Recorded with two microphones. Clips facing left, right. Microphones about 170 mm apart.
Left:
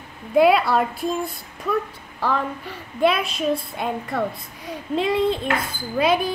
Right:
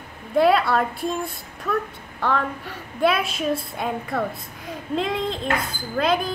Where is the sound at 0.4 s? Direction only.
5° left (ahead or behind).